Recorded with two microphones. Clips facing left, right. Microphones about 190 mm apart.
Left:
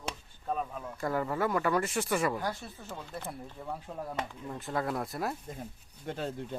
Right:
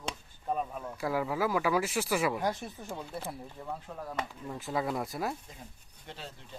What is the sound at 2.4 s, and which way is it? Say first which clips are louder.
Speech: right 3 dB; 20° right (ahead or behind).